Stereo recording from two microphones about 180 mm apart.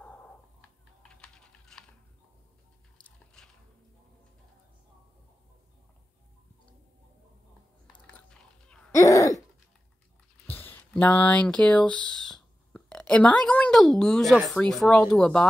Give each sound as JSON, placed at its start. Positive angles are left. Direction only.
{"t": 0.0, "sound": "a sound", "side_deg": 5}
{"t": 1.0, "sound": "typing", "side_deg": 5}
{"t": 3.4, "sound": "music", "side_deg": 5}
{"t": 8.3, "sound": "biting", "side_deg": 5}
{"t": 8.9, "sound": "a sound", "side_deg": 20}
{"t": 10.4, "sound": "speech", "side_deg": 10}